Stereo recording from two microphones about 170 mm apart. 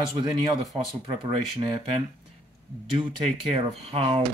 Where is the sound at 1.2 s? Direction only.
25° right (ahead or behind).